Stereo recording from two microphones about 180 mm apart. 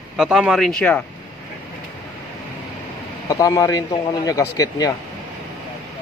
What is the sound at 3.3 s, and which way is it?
Speech, 20° left (ahead or behind).